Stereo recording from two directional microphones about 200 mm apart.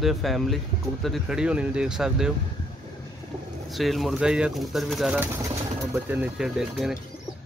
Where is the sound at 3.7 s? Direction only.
Centre (ahead or behind).